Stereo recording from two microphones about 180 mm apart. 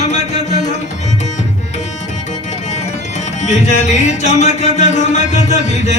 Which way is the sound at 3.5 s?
40° left (ahead or behind).